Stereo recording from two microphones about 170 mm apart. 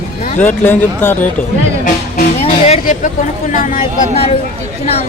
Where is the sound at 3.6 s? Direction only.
55° left (ahead or behind).